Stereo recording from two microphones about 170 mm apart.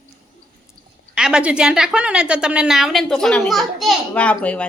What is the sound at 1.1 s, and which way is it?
A woman's voice, 5° right (ahead or behind).